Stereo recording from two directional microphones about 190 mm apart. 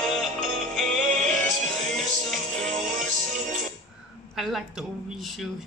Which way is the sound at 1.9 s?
Centre (ahead or behind).